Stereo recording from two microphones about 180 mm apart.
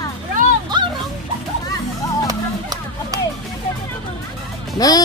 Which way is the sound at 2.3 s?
20° right (ahead or behind).